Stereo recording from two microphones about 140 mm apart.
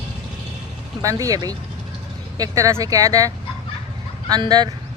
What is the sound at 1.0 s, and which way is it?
Speech, 25° right (ahead or behind).